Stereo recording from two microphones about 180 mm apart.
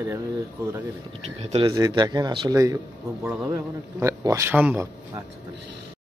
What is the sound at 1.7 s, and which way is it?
A man's voice, 20° right (ahead or behind).